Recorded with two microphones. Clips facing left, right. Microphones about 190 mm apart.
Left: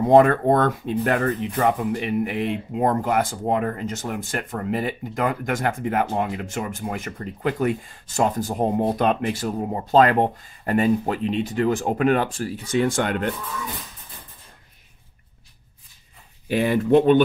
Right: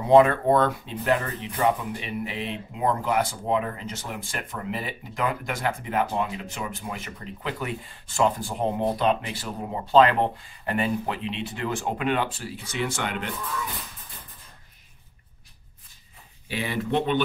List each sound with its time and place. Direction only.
0.1 s speech: 45° left (ahead or behind)
16.4 s speech: 45° left (ahead or behind)